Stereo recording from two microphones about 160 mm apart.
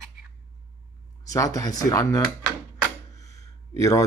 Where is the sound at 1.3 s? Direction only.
20° left (ahead or behind).